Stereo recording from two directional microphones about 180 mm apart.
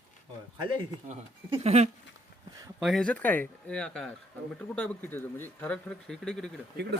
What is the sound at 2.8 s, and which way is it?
Speech, centre (ahead or behind).